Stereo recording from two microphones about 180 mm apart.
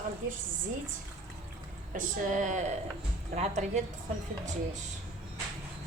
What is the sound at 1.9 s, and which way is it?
A woman's voice, 45° right (ahead or behind).